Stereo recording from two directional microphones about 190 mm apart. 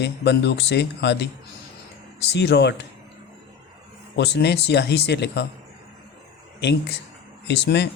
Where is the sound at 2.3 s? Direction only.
65° left (ahead or behind).